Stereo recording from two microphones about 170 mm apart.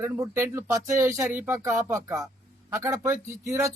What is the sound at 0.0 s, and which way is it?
Speech, 15° right (ahead or behind).